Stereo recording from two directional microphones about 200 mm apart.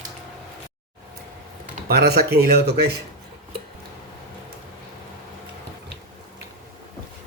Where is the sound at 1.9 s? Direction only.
50° right (ahead or behind).